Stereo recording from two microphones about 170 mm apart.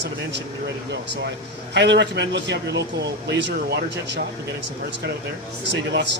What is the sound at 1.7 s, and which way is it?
Speech, 90° right.